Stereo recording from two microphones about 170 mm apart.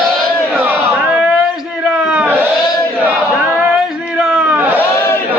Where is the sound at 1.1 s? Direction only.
5° right (ahead or behind).